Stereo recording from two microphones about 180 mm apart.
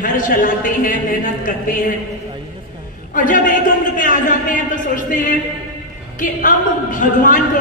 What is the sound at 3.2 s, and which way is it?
A man's voice, 45° left (ahead or behind).